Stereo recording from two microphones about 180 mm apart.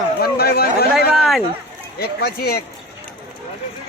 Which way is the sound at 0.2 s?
60° left (ahead or behind).